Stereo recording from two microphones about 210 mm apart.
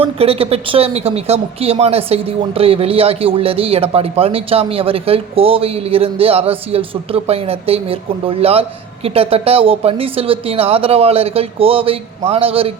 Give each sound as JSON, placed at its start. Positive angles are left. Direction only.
{"t": 0.0, "sound": "speech", "side_deg": -30}